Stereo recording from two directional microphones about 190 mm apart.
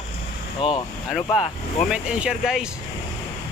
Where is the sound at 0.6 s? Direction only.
5° right (ahead or behind).